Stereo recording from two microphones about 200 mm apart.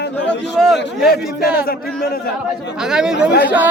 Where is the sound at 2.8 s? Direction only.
5° right (ahead or behind).